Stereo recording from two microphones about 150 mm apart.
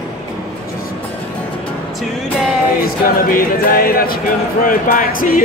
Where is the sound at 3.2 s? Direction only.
70° left (ahead or behind).